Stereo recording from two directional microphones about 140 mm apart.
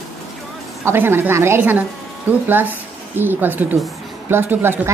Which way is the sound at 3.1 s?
15° right (ahead or behind).